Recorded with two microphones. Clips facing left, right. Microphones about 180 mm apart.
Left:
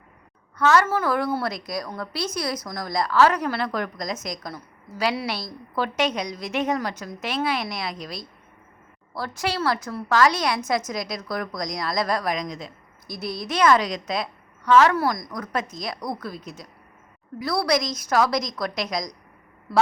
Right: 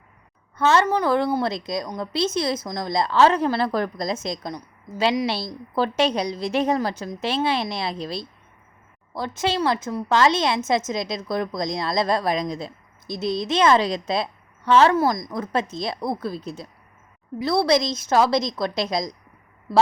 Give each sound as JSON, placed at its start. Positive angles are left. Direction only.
{"t": 0.5, "sound": "a woman's voice", "side_deg": -25}